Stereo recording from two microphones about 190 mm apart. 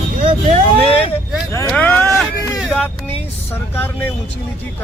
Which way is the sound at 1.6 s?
5° left (ahead or behind).